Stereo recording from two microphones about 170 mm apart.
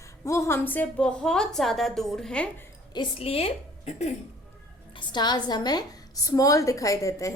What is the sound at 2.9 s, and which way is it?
A woman's voice, 30° left (ahead or behind).